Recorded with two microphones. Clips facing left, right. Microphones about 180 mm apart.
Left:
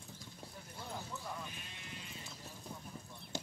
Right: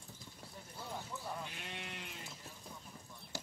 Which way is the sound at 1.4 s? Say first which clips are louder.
Right 3 dB; 70° right (ahead or behind).